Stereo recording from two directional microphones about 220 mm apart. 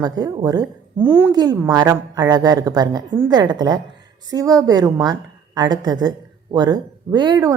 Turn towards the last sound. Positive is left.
turn(degrees=-20)  # may be behind; listen again after turning